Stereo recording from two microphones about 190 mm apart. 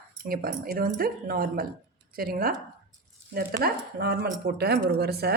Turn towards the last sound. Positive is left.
turn(degrees=-55)  # may be behind; listen again after turning